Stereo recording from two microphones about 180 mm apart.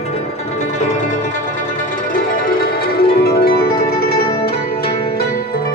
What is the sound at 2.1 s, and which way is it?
Music, 55° left (ahead or behind).